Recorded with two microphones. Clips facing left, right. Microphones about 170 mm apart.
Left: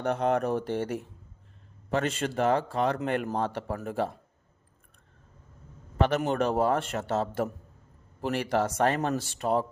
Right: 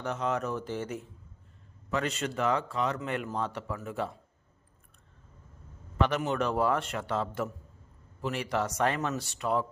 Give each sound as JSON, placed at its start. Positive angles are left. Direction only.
{"t": 0.0, "sound": "speech", "side_deg": 55}
{"t": 6.0, "sound": "speech", "side_deg": 45}